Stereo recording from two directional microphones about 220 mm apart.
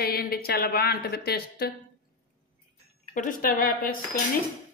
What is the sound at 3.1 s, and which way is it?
Speech, 35° left (ahead or behind).